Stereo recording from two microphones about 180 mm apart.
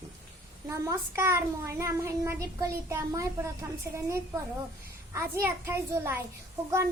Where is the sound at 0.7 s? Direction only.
15° right (ahead or behind).